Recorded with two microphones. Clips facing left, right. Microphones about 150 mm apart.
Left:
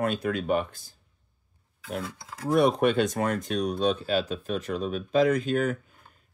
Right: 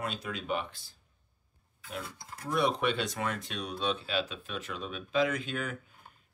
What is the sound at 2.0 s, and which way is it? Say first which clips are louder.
Speech: left 7 dB; 90° left.